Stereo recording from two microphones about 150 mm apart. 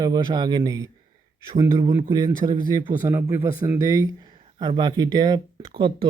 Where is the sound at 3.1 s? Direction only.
15° right (ahead or behind).